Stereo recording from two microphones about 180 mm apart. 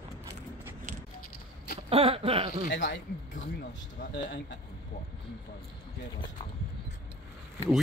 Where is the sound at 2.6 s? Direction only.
80° left.